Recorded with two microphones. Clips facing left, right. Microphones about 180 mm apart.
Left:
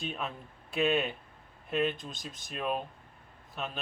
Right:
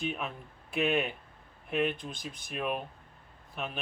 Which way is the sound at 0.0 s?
10° right (ahead or behind).